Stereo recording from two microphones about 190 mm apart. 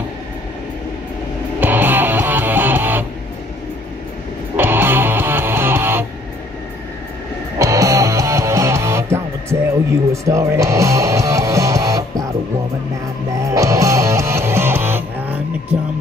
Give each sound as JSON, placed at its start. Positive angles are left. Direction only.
{"t": 1.6, "sound": "music", "side_deg": -10}
{"t": 4.6, "sound": "music", "side_deg": -10}
{"t": 7.5, "sound": "music", "side_deg": -15}
{"t": 13.4, "sound": "music", "side_deg": -15}